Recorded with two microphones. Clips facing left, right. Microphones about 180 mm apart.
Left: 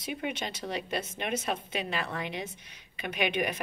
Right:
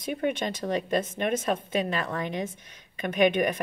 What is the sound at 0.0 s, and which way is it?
A woman's voice, 45° right (ahead or behind).